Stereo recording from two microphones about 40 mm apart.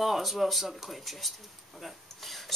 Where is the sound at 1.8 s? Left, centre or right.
Centre.